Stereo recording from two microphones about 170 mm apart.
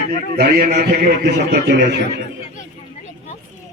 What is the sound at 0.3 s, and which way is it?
A man's voice, 65° right (ahead or behind).